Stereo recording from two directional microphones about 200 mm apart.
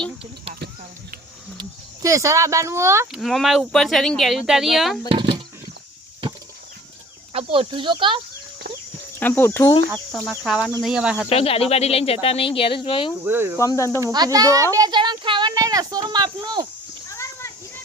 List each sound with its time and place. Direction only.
1.5 s speech: 15° right (ahead or behind)
3.1 s speech: centre (ahead or behind)
5.0 s speech: 25° right (ahead or behind)
7.3 s speech: 30° right (ahead or behind)
9.1 s speech: 10° left (ahead or behind)
10.2 s speech: centre (ahead or behind)
11.3 s speech: 30° left (ahead or behind)
13.2 s cricket: 10° right (ahead or behind)
13.6 s speech: 15° left (ahead or behind)
14.0 s a child's voice: 20° right (ahead or behind)
17.1 s a sound: 15° left (ahead or behind)